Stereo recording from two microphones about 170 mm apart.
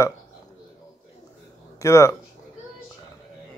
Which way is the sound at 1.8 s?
15° left (ahead or behind).